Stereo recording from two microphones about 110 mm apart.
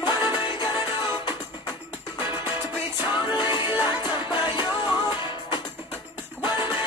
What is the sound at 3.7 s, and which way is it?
Music, 45° left (ahead or behind).